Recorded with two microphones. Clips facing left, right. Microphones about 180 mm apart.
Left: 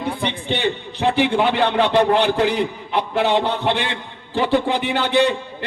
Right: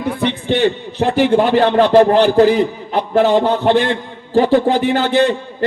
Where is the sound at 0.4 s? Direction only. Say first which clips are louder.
Right 8 dB; 45° right (ahead or behind).